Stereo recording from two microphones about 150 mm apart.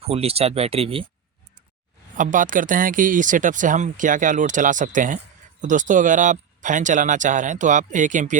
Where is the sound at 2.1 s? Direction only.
60° right (ahead or behind).